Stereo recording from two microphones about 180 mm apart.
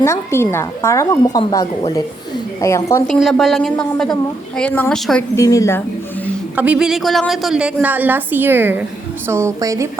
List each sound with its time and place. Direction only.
0.0 s a woman's voice: 15° left (ahead or behind)
3.1 s a woman's voice: centre (ahead or behind)
5.4 s a woman's voice: 15° left (ahead or behind)
6.6 s a woman's voice: 5° right (ahead or behind)